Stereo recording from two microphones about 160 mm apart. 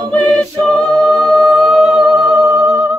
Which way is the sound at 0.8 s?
5° left (ahead or behind).